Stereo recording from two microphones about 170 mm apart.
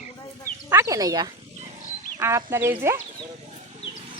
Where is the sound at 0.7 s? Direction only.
20° right (ahead or behind).